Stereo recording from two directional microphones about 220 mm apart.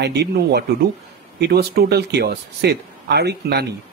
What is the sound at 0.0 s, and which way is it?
Speech, 50° right (ahead or behind).